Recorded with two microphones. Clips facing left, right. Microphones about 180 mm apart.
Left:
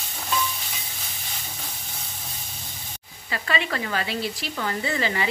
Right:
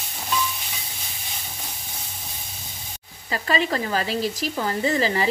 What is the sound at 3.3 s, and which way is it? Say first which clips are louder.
Speech: right 4 dB; 40° right (ahead or behind).